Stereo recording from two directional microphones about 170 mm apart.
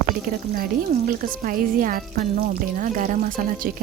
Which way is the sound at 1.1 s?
55° right (ahead or behind).